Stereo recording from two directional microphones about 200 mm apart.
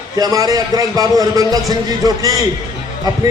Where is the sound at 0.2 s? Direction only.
20° right (ahead or behind).